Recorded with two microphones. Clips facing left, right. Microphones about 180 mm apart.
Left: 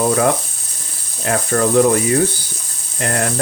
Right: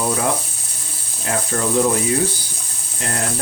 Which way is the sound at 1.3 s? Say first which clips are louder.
Left 5 dB; 60° left (ahead or behind).